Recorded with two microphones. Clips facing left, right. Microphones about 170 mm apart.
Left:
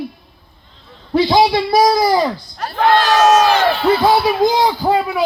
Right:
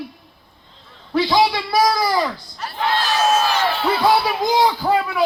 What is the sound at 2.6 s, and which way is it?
Speech, 50° left (ahead or behind).